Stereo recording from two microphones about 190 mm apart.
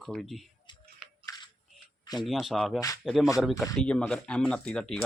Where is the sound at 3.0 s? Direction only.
Centre (ahead or behind).